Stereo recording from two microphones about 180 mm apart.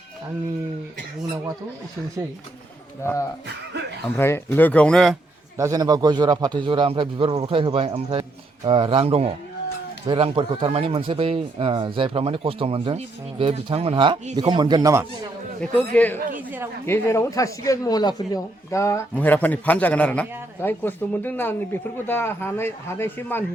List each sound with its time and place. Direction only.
3.0 s a man's voice: 15° left (ahead or behind)
5.5 s a man's voice: 20° right (ahead or behind)
15.6 s a man's voice: 10° left (ahead or behind)